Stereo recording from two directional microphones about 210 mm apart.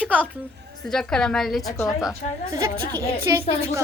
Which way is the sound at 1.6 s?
15° left (ahead or behind).